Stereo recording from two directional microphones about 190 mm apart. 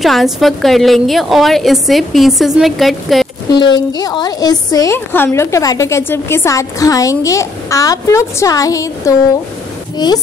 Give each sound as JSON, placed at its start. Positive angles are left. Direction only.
{"t": 0.0, "sound": "a woman's voice", "side_deg": 0}
{"t": 3.5, "sound": "a woman's voice", "side_deg": 20}